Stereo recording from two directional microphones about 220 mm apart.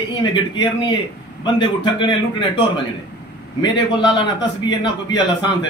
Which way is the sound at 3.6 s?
20° left (ahead or behind).